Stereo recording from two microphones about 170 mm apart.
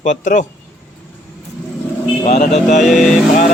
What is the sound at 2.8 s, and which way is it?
Vehicle, centre (ahead or behind).